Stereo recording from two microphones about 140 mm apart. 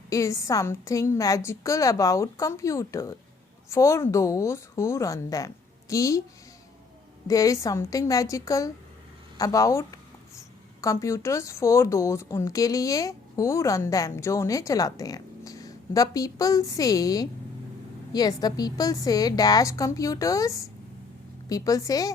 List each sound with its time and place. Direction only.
0.1 s a woman's voice: 20° left (ahead or behind)
7.3 s a woman's voice: 25° left (ahead or behind)